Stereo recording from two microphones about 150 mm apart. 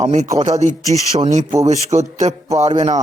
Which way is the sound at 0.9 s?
45° right (ahead or behind).